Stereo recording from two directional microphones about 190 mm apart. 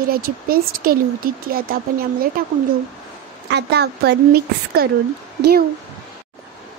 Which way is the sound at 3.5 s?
60° right (ahead or behind).